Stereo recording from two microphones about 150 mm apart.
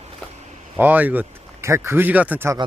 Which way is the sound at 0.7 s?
10° right (ahead or behind).